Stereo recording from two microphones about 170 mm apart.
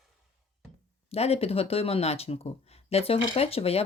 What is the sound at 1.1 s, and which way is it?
Speech, 35° left (ahead or behind).